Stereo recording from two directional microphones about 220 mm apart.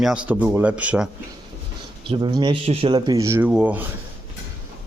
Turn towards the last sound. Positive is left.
turn(degrees=-5)  # may be behind; listen again after turning